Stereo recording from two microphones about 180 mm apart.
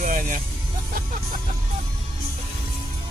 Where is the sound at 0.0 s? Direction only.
45° right (ahead or behind).